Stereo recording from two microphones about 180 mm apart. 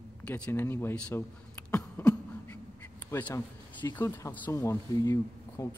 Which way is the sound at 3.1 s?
10° left (ahead or behind).